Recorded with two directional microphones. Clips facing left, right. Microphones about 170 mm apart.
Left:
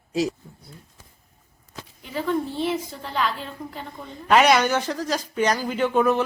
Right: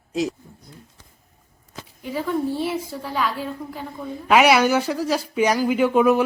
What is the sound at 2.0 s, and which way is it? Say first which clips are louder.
A woman's voice: right 2 dB; 10° right (ahead or behind).